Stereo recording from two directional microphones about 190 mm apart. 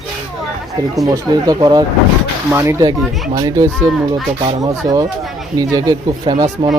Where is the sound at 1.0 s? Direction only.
20° right (ahead or behind).